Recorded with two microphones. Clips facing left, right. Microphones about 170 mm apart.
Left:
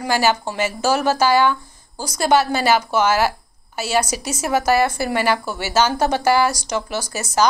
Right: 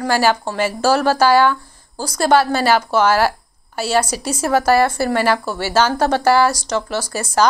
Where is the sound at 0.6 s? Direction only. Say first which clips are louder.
Right 3 dB; 35° right (ahead or behind).